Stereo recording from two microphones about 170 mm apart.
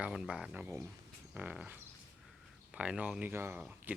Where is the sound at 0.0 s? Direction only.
5° right (ahead or behind).